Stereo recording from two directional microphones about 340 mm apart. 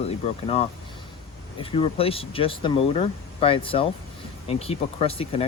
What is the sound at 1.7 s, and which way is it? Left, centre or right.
Speech, centre.